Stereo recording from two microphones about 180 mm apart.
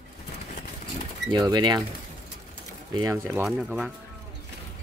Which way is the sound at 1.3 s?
25° right (ahead or behind).